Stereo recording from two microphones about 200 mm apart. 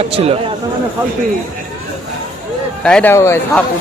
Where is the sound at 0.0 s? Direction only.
30° right (ahead or behind).